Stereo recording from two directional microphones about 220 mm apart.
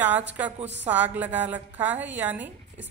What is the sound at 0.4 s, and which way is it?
A woman's voice, 5° right (ahead or behind).